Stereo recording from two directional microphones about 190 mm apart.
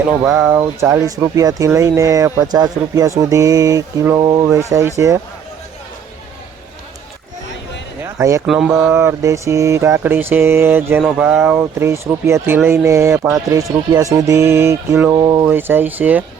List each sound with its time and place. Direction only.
0.3 s speech: 5° right (ahead or behind)
8.0 s a sound: 15° right (ahead or behind)
8.4 s speech: 5° right (ahead or behind)
8.9 s speech: 15° right (ahead or behind)